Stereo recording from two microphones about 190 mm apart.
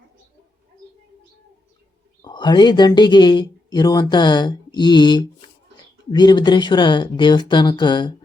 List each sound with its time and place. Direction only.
2.2 s speech: 25° left (ahead or behind)